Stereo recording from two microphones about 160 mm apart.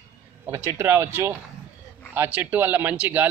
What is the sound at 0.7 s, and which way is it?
Speech, 20° right (ahead or behind).